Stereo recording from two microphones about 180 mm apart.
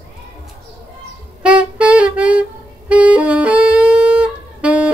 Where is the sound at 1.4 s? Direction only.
5° right (ahead or behind).